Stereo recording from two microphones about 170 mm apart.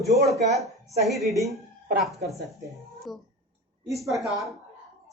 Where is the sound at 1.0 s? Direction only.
Centre (ahead or behind).